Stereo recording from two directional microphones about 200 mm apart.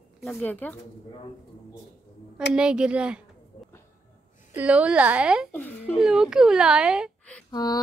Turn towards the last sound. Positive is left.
turn(degrees=20)  # may be behind; listen again after turning